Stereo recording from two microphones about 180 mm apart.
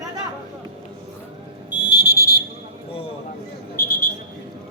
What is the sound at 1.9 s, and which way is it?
Fire alarm, 65° left (ahead or behind).